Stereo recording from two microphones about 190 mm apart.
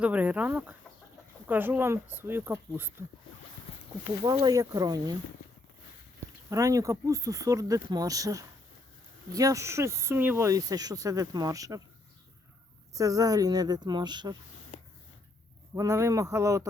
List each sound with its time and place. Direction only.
0.0 s speech: 5° right (ahead or behind)
4.3 s speech: 20° right (ahead or behind)
6.5 s speech: 15° right (ahead or behind)
12.9 s speech: 20° right (ahead or behind)
14.7 s a sound: 40° left (ahead or behind)
15.7 s speech: 15° right (ahead or behind)